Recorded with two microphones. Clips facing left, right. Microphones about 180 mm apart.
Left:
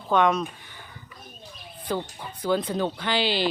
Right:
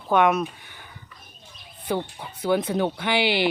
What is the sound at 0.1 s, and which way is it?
Speech, 5° right (ahead or behind).